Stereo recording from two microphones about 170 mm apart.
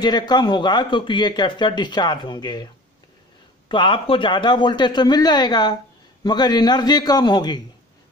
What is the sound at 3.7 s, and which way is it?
Speech, 30° left (ahead or behind).